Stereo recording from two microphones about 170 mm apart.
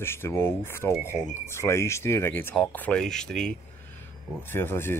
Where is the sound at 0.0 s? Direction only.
15° left (ahead or behind).